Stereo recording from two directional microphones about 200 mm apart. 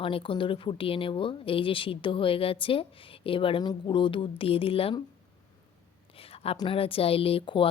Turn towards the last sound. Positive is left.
turn(degrees=25)  # may be behind; listen again after turning